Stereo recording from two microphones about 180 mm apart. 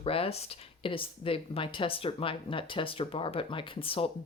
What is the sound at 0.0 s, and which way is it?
Speech, 30° left (ahead or behind).